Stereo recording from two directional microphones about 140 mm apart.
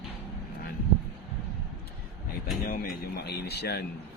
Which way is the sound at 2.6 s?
90° left.